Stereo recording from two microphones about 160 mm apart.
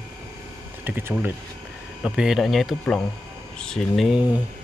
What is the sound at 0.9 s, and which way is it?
Speech, 10° right (ahead or behind).